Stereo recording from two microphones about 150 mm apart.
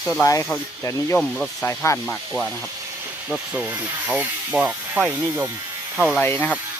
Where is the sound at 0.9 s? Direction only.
20° left (ahead or behind).